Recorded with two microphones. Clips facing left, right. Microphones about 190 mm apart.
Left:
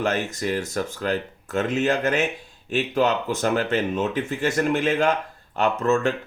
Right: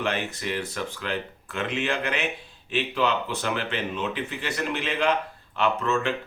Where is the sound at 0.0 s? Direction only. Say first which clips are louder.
Left 4 dB; 45° left (ahead or behind).